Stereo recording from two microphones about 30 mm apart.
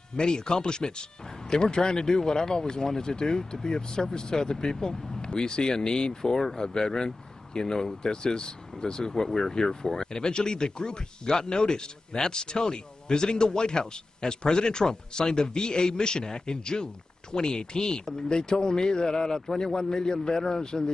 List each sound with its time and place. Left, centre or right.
0.1 s a man's voice: left